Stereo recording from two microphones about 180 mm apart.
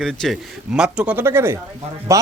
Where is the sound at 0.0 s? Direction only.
Centre (ahead or behind).